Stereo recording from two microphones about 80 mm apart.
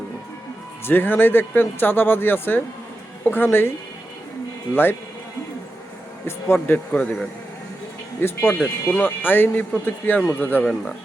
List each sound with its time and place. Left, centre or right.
0.9 s speech: left
4.7 s speech: left
6.2 s speech: left
6.9 s speech: centre
8.2 s speech: left
8.5 s speech: centre